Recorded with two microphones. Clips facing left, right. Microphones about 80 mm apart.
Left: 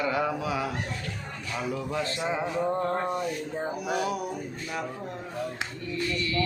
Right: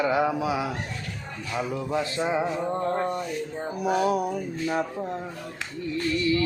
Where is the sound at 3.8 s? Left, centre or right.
Right.